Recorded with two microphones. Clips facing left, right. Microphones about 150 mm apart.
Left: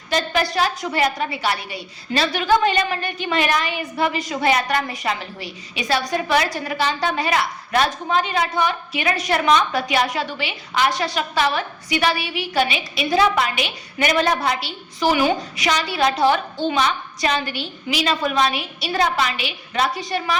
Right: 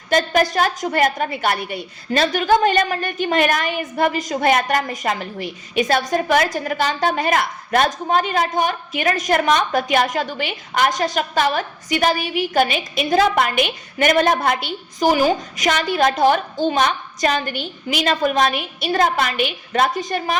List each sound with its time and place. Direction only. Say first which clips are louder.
0.1 s a woman's voice: right 4 dB; 45° right (ahead or behind)